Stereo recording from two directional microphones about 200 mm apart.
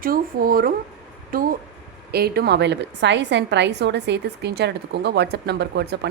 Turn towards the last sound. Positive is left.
turn(degrees=-55)  # may be behind; listen again after turning